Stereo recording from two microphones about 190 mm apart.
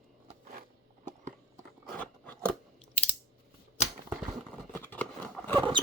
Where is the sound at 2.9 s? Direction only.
35° left (ahead or behind).